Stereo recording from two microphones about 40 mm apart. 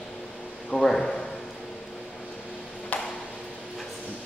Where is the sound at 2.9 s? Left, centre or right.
Left.